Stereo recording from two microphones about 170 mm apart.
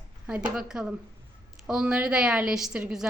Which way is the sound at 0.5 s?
5° right (ahead or behind).